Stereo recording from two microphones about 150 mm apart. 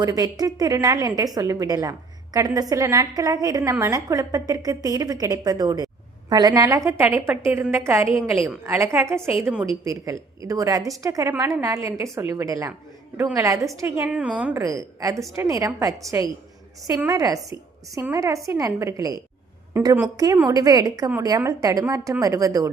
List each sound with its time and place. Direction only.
0.0 s a woman's voice: 25° right (ahead or behind); by 9.6 s 10° right (ahead or behind)
9.6 s a woman's voice: 20° right (ahead or behind)
14.6 s a woman's voice: 25° right (ahead or behind)
17.1 s a woman's voice: 20° right (ahead or behind)